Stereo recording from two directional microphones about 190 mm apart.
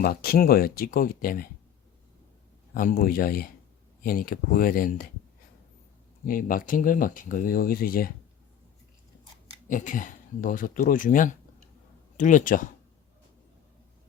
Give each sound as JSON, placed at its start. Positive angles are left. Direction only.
{"t": 0.0, "sound": "speech", "side_deg": 55}
{"t": 2.7, "sound": "speech", "side_deg": 50}
{"t": 6.2, "sound": "speech", "side_deg": 45}
{"t": 9.6, "sound": "speech", "side_deg": 45}